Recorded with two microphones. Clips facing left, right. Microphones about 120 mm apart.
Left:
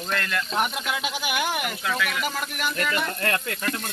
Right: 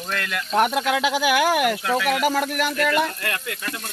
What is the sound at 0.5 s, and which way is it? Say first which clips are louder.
Speech: right 9 dB; 65° right (ahead or behind).